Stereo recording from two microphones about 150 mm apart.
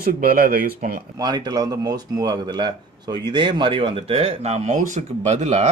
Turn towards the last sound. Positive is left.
turn(degrees=-50)  # may be behind; listen again after turning